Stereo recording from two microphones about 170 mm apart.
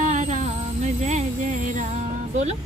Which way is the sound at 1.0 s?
50° right (ahead or behind).